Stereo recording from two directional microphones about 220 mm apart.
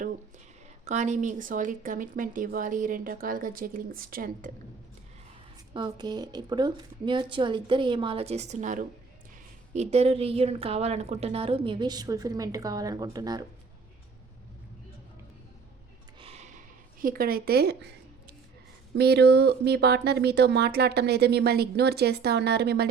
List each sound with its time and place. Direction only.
0.9 s a woman's voice: 35° right (ahead or behind)
5.7 s a woman's voice: 20° right (ahead or behind)
16.2 s a sound: 30° right (ahead or behind)
17.0 s speech: 40° right (ahead or behind)
18.9 s speech: 50° right (ahead or behind)